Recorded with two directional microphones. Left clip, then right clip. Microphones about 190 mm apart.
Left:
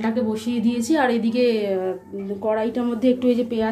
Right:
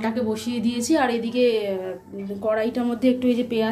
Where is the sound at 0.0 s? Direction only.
5° left (ahead or behind); by 2.0 s 25° left (ahead or behind).